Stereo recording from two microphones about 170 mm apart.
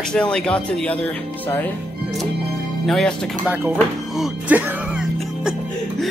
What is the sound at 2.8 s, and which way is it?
Speech, 5° left (ahead or behind).